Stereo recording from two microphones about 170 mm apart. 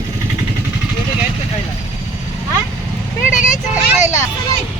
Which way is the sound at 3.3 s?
50° left (ahead or behind).